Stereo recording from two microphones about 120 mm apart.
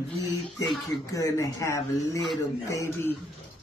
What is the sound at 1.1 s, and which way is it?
Speech, 25° left (ahead or behind).